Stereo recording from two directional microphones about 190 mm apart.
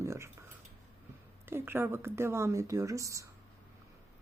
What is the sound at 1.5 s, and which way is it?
Speech, 10° right (ahead or behind).